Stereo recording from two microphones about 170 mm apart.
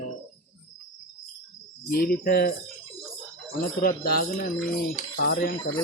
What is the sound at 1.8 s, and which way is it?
Speech, 60° left (ahead or behind).